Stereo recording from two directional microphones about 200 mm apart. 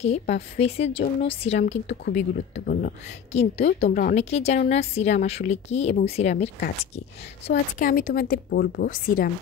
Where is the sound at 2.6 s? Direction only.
45° left (ahead or behind).